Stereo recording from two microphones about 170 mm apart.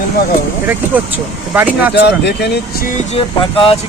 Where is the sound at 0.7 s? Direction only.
10° right (ahead or behind).